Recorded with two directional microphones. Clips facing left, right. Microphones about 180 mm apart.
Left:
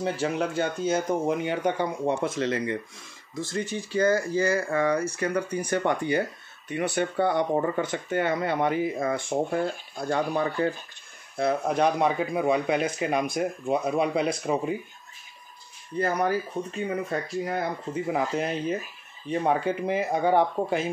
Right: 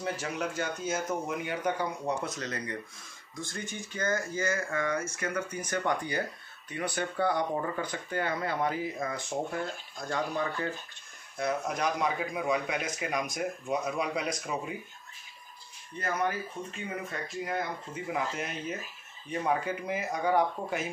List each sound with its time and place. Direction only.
0.0 s speech: 30° left (ahead or behind)
3.9 s speech: 35° left (ahead or behind)
16.0 s speech: 35° left (ahead or behind)